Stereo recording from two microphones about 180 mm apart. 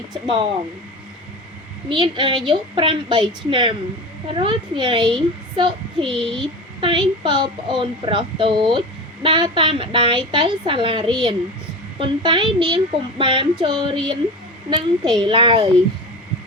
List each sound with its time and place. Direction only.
1.9 s a child's voice: 25° right (ahead or behind)